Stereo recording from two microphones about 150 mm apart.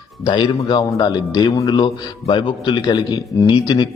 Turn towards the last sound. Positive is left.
turn(degrees=30)  # may be behind; listen again after turning